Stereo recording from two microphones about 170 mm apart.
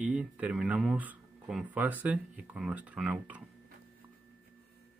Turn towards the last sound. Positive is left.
turn(degrees=-5)  # may be behind; listen again after turning